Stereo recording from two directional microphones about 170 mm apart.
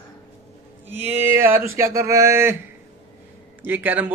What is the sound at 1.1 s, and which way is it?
A man's voice, 10° right (ahead or behind).